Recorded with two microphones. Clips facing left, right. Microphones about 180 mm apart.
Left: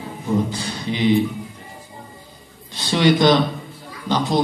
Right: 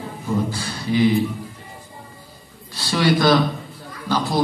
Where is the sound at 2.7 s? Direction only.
20° left (ahead or behind).